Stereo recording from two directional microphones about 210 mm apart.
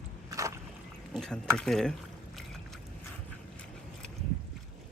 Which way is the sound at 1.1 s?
5° left (ahead or behind).